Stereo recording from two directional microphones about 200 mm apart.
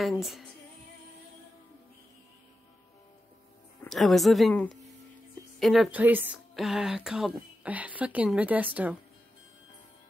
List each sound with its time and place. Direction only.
0.0 s speech: centre (ahead or behind)
3.8 s speech: centre (ahead or behind)